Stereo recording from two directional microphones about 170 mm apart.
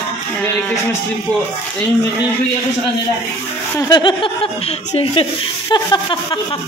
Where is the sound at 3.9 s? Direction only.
25° left (ahead or behind).